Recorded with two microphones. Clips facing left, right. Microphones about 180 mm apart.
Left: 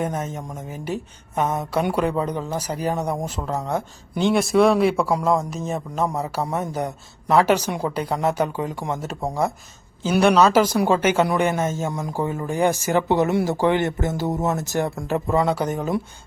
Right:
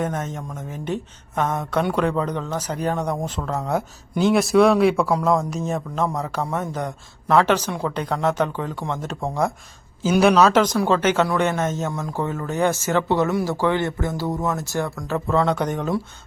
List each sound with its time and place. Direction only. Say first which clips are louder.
0.0 s speech: even; 10° left (ahead or behind)
5.2 s music: right 1 dB; centre (ahead or behind)
6.7 s speech: left 1 dB; 5° left (ahead or behind)
10.0 s music: right 1 dB; 5° right (ahead or behind)
10.8 s speech: even; 10° left (ahead or behind)